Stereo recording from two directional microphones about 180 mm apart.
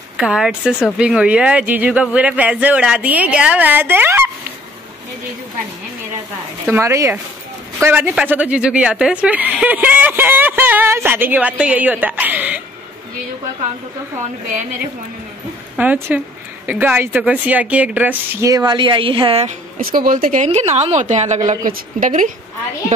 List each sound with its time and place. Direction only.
0.2 s speech: 5° right (ahead or behind)
6.6 s speech: 15° right (ahead or behind)
15.7 s speech: 10° right (ahead or behind); by 19.5 s 30° right (ahead or behind)
19.8 s speech: 55° right (ahead or behind)
20.4 s a woman's voice: 40° right (ahead or behind)